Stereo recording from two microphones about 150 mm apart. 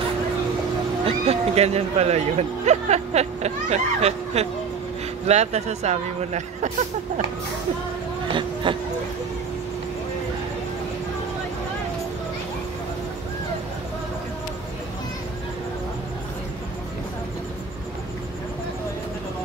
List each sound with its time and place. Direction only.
1.0 s speech: 45° right (ahead or behind)
8.3 s speech: 35° right (ahead or behind)